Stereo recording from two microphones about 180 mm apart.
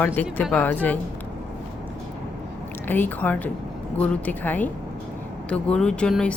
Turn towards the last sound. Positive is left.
turn(degrees=5)  # may be behind; listen again after turning